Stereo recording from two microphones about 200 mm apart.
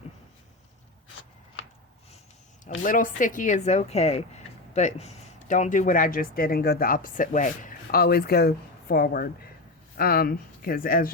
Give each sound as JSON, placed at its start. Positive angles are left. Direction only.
{"t": 2.8, "sound": "a woman's voice", "side_deg": 40}